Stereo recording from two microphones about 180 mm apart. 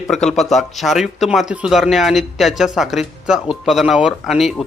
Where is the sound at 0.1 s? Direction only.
Centre (ahead or behind).